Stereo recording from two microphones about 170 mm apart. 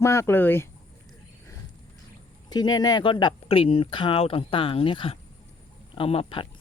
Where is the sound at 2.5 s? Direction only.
25° left (ahead or behind).